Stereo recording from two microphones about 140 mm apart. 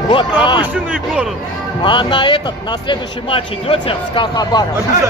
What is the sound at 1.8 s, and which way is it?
Speech, 35° left (ahead or behind).